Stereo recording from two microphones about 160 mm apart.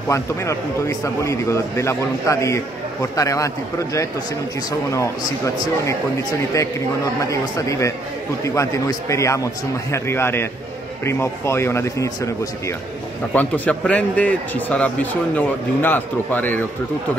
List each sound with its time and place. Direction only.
0.1 s a man's voice: 20° left (ahead or behind)
7.2 s a man's voice: 20° left (ahead or behind)